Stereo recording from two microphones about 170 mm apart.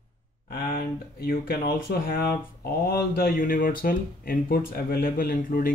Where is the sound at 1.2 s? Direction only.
60° left (ahead or behind).